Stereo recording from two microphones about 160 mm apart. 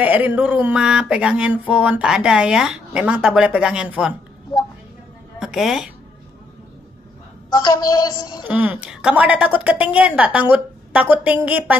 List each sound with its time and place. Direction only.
0.0 s a sound: 10° right (ahead or behind)
5.4 s speech: centre (ahead or behind)
7.5 s a woman's voice: 25° left (ahead or behind)
8.5 s a woman's voice: 10° right (ahead or behind)